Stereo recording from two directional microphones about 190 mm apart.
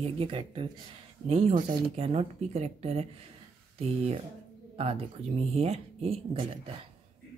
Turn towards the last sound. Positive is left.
turn(degrees=-30)  # may be behind; listen again after turning